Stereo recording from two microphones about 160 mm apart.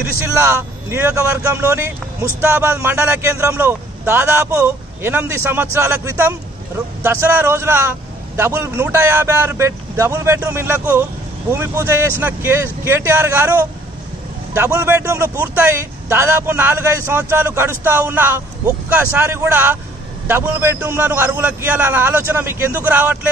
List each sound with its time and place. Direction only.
0.0 s a man's voice: 15° right (ahead or behind)